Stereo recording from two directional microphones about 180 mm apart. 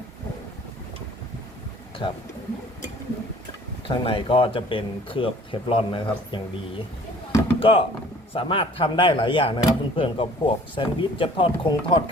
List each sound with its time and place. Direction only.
2.0 s speech: 30° left (ahead or behind)
3.8 s speech: 30° left (ahead or behind)